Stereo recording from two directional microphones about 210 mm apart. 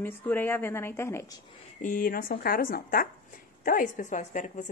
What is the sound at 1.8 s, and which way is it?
A woman's voice, 40° left (ahead or behind).